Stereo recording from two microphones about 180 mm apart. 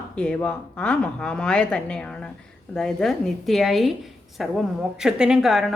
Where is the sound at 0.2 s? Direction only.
5° left (ahead or behind).